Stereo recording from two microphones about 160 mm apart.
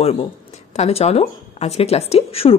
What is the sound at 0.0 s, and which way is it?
Speech, 40° left (ahead or behind).